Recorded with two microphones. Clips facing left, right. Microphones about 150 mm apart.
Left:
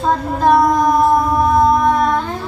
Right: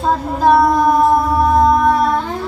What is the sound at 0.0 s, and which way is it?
Child singing, 5° right (ahead or behind).